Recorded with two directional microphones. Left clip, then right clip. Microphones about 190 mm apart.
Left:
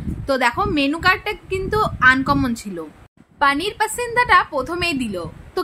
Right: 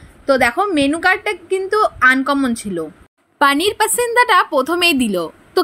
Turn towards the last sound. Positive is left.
turn(degrees=-30)  # may be behind; listen again after turning